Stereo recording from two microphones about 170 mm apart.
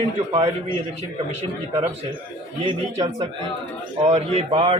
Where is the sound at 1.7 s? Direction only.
40° right (ahead or behind).